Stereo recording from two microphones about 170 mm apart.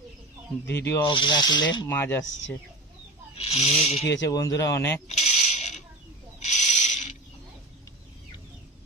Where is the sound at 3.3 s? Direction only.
35° left (ahead or behind).